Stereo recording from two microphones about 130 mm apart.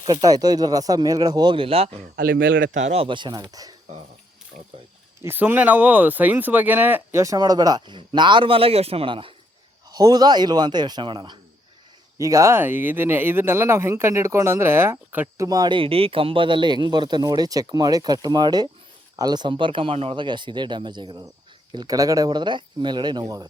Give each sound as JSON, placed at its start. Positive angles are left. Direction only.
{"t": 0.1, "sound": "speech", "side_deg": -30}
{"t": 2.9, "sound": "speech", "side_deg": -45}
{"t": 4.5, "sound": "speech", "side_deg": -90}
{"t": 5.2, "sound": "speech", "side_deg": -15}
{"t": 9.9, "sound": "speech", "side_deg": -30}
{"t": 12.1, "sound": "speech", "side_deg": -25}
{"t": 15.4, "sound": "speech", "side_deg": -30}